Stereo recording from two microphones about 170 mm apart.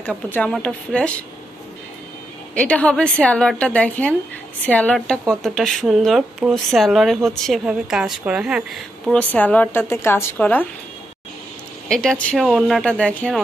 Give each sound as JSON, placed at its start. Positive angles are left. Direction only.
{"t": 0.3, "sound": "speech", "side_deg": 5}
{"t": 2.5, "sound": "a woman's voice", "side_deg": 5}
{"t": 11.9, "sound": "speech", "side_deg": 5}